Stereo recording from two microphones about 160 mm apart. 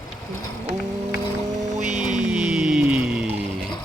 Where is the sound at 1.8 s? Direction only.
45° right (ahead or behind).